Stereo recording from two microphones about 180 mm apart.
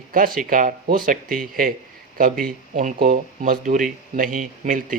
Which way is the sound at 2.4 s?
45° right (ahead or behind).